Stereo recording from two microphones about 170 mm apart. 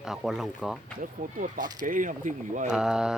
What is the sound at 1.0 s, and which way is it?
Speech, 50° right (ahead or behind).